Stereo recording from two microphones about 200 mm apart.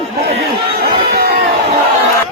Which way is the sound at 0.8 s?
50° right (ahead or behind).